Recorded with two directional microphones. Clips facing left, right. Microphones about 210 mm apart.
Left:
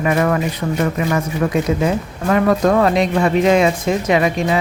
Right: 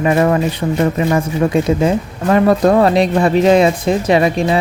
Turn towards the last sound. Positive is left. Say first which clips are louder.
# right 3 dB
turn(degrees=-30)  # may be behind; listen again after turning